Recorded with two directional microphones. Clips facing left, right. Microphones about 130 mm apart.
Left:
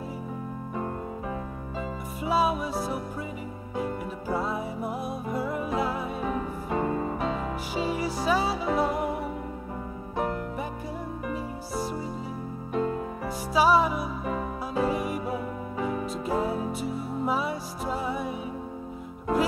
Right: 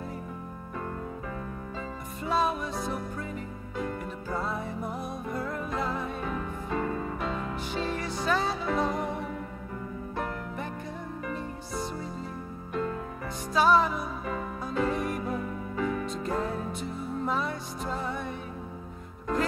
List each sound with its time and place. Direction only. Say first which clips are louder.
2.2 s music: left 3 dB; 5° left (ahead or behind)
6.7 s music: left 4 dB; 25° left (ahead or behind)
7.3 s music: left 2 dB; 5° left (ahead or behind)
13.5 s music: left 1 dB; 5° left (ahead or behind)